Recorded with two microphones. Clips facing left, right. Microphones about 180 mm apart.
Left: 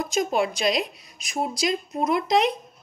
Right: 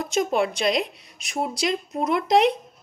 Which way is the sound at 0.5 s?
60° right (ahead or behind).